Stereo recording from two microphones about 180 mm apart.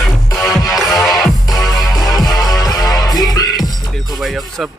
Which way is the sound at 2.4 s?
20° left (ahead or behind).